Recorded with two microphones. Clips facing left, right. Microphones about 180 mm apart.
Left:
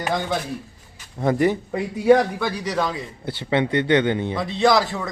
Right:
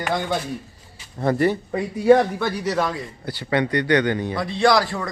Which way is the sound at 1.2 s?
15° left (ahead or behind).